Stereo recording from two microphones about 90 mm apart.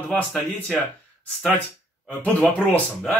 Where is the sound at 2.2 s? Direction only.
10° left (ahead or behind).